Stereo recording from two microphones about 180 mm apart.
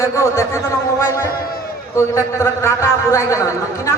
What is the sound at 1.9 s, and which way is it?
A man's voice, 15° left (ahead or behind).